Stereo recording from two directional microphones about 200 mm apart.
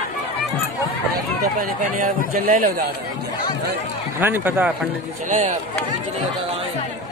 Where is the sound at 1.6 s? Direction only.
40° right (ahead or behind).